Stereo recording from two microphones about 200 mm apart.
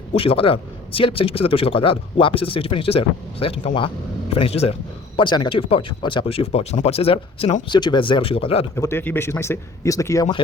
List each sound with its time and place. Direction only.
0.1 s a man's voice: 30° left (ahead or behind)
8.7 s speech: 10° left (ahead or behind)